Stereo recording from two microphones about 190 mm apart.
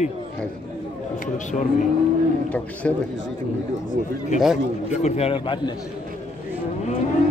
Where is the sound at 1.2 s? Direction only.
40° left (ahead or behind).